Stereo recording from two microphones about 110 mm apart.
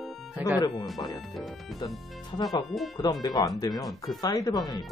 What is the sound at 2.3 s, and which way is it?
Speech, 35° left (ahead or behind).